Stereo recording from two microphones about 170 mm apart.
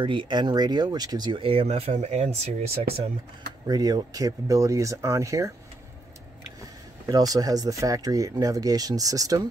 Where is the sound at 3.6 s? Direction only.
20° right (ahead or behind).